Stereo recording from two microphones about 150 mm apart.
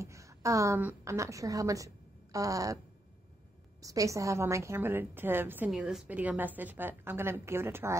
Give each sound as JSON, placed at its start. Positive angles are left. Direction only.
{"t": 0.0, "sound": "a woman's voice", "side_deg": -20}
{"t": 3.8, "sound": "a woman's voice", "side_deg": -20}
{"t": 5.7, "sound": "a woman's voice", "side_deg": 0}